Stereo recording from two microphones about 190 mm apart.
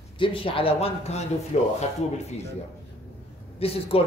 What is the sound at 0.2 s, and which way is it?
A man's voice, 25° left (ahead or behind).